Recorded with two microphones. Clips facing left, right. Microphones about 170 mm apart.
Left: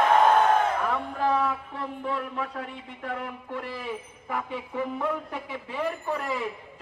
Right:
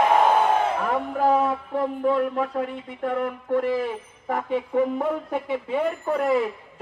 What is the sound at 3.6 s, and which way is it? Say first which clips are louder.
A man's voice: right 11 dB; 45° right (ahead or behind).